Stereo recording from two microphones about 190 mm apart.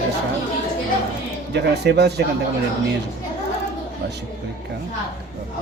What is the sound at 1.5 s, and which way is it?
Speech, 60° right (ahead or behind).